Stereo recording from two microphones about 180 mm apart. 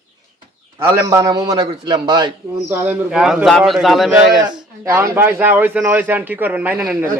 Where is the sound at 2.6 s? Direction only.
10° right (ahead or behind).